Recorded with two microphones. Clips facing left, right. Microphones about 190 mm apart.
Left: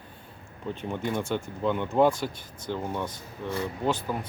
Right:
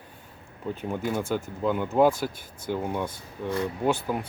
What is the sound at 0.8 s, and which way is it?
Speech, 5° right (ahead or behind).